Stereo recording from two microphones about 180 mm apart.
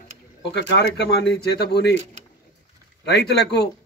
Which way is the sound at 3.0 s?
65° left (ahead or behind).